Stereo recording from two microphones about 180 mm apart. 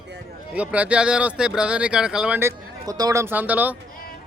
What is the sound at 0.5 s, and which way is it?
Speech, 5° right (ahead or behind).